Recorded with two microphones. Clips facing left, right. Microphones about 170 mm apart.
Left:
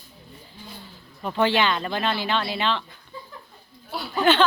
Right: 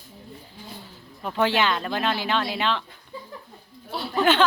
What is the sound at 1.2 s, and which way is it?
Speech, 5° right (ahead or behind).